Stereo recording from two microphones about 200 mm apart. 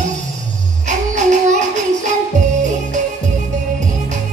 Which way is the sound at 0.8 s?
35° right (ahead or behind).